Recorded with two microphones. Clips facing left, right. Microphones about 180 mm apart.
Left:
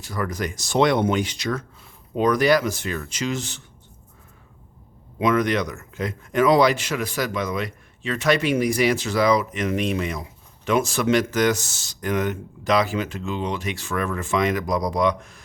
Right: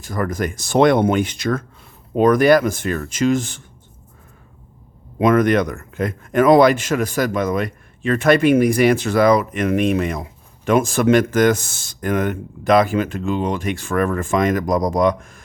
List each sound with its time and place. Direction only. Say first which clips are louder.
0.0 s a man's voice: right 5 dB; 50° right (ahead or behind)
5.2 s a man's voice: right 6 dB; 50° right (ahead or behind)